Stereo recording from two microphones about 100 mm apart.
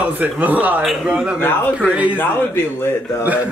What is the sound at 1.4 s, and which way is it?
Speech, 20° left (ahead or behind).